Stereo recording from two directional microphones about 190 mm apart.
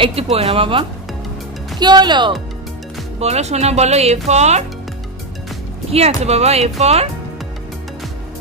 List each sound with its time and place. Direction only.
0.0 s speech: 30° right (ahead or behind)
3.2 s speech: 35° right (ahead or behind)
5.9 s speech: 35° right (ahead or behind)